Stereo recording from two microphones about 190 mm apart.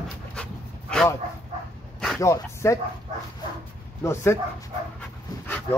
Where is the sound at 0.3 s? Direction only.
5° left (ahead or behind).